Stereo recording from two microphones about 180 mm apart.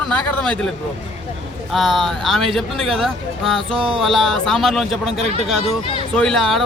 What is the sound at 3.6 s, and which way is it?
Music, 30° right (ahead or behind).